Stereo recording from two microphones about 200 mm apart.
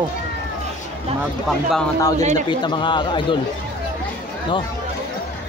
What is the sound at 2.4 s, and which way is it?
Speech, 25° left (ahead or behind).